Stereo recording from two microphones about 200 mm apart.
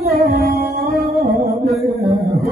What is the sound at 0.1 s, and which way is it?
Music, 50° right (ahead or behind).